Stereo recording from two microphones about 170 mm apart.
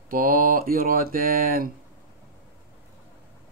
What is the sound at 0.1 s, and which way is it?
Speech, 55° right (ahead or behind).